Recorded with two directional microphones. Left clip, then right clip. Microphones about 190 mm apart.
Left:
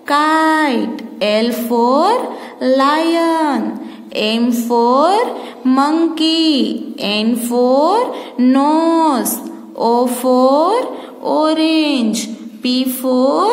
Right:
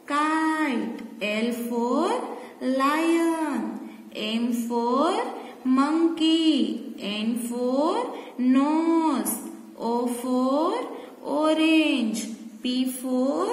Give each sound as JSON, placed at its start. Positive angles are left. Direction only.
{"t": 0.1, "sound": "a sound", "side_deg": 40}
{"t": 1.2, "sound": "music", "side_deg": 45}
{"t": 2.6, "sound": "a woman's voice", "side_deg": 35}
{"t": 12.6, "sound": "music", "side_deg": 40}